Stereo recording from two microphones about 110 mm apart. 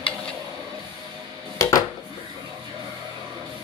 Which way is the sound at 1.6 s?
35° left (ahead or behind).